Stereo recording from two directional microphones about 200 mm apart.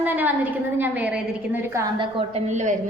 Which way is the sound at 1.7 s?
20° right (ahead or behind).